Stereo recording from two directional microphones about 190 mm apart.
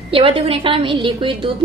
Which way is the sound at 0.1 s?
30° right (ahead or behind).